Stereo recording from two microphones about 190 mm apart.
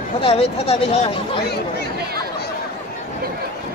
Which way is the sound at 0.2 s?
30° left (ahead or behind).